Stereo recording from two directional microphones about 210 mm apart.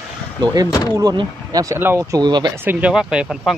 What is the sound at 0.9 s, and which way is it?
Speech, 20° right (ahead or behind).